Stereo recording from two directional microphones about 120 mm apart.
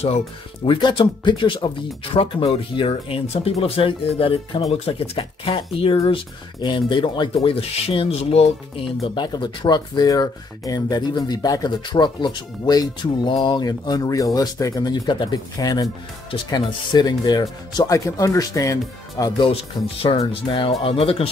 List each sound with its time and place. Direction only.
0.7 s speech: 45° left (ahead or behind)
19.4 s speech: 50° left (ahead or behind)